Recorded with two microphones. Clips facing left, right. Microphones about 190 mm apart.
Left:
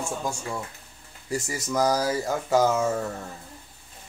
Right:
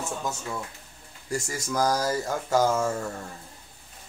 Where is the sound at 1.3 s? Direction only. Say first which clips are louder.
Left 2 dB; 5° left (ahead or behind).